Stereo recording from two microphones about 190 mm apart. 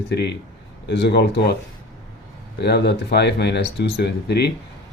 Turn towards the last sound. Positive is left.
turn(degrees=60)  # may be behind; listen again after turning